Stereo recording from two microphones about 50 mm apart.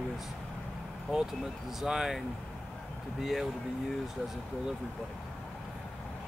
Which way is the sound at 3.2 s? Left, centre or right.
Centre.